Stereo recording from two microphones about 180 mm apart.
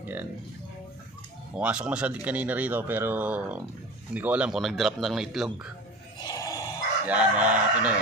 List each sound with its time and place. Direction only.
0.0 s speech: 10° right (ahead or behind)
1.6 s speech: 5° right (ahead or behind)
6.1 s a sound: 20° left (ahead or behind)
7.1 s speech: 10° right (ahead or behind)